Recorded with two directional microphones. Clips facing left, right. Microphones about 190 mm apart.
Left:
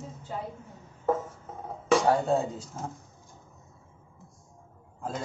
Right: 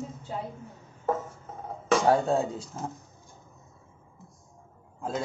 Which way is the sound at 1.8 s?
5° left (ahead or behind).